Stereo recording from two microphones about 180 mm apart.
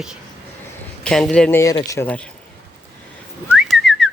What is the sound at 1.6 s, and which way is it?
Speech, 20° left (ahead or behind).